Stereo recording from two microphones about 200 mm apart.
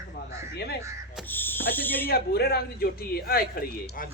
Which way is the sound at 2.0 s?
50° left (ahead or behind).